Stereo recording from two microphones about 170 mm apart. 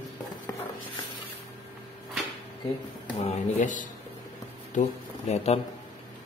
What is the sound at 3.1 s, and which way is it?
Speech, 45° left (ahead or behind).